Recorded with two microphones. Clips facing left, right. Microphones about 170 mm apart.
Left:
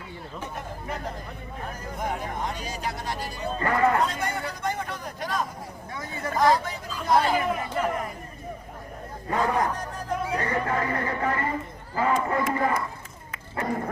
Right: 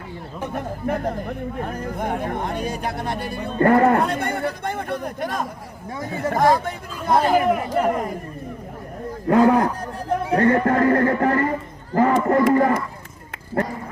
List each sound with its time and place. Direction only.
0.5 s speech: 55° right (ahead or behind)
9.2 s speech: 65° right (ahead or behind)
10.3 s speech: 55° right (ahead or behind)